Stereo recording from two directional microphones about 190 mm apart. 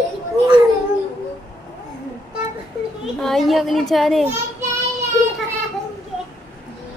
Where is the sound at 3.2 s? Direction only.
Centre (ahead or behind).